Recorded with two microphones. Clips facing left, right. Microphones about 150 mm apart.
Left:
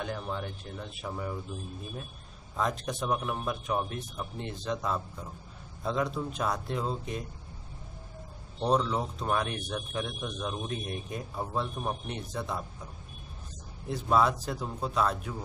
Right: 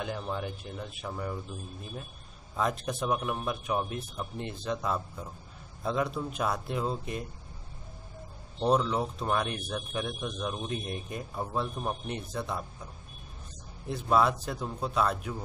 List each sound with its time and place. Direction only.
0.0 s speech: 5° right (ahead or behind)
2.5 s speech: centre (ahead or behind)
8.5 s speech: centre (ahead or behind)
13.8 s speech: centre (ahead or behind)